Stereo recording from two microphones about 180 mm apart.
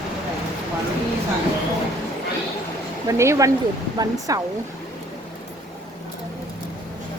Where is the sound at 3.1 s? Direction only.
15° right (ahead or behind).